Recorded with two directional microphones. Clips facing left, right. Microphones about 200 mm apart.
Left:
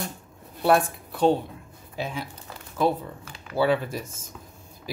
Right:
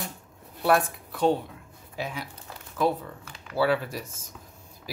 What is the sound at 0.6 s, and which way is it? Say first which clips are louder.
Speech: left 2 dB; 30° left (ahead or behind).